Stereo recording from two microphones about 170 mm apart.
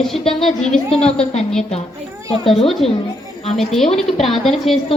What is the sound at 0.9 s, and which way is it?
Speech, 35° left (ahead or behind).